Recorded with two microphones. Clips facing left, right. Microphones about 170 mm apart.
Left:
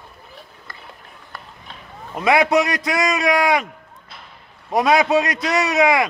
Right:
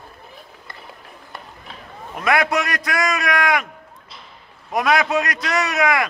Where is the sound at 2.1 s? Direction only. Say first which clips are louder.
Left 4 dB; 20° left (ahead or behind).